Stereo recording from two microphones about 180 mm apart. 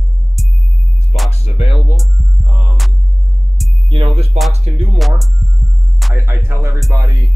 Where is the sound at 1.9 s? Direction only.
Centre (ahead or behind).